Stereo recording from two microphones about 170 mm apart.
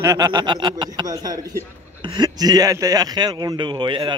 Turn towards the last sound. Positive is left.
turn(degrees=-30)  # may be behind; listen again after turning